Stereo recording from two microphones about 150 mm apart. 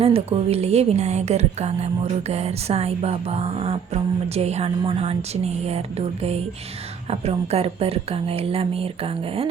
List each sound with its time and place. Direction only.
0.0 s speech: 40° right (ahead or behind)
7.1 s speech: 40° right (ahead or behind)